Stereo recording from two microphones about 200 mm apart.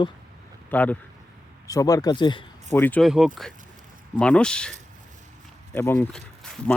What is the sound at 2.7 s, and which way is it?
Speech, 10° left (ahead or behind).